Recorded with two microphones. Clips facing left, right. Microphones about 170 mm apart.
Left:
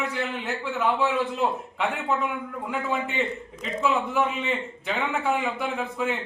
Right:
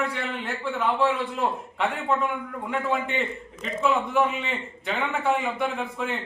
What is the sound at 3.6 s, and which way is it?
A man's voice, centre (ahead or behind).